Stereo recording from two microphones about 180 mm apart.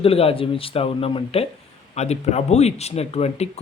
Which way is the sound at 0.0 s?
35° left (ahead or behind).